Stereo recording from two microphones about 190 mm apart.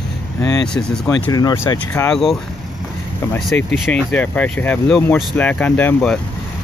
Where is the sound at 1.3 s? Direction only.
15° left (ahead or behind).